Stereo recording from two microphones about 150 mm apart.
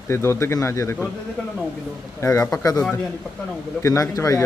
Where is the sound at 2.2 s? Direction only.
20° left (ahead or behind).